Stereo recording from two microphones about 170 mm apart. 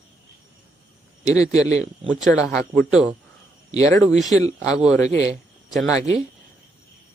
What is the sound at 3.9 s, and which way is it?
Speech, 20° left (ahead or behind).